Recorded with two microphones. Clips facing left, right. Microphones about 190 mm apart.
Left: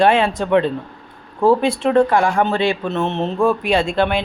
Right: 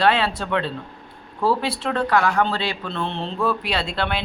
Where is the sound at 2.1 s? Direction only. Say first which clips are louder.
Left 3 dB; 25° left (ahead or behind).